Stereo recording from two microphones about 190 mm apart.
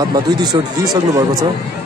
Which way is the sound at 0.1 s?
20° right (ahead or behind).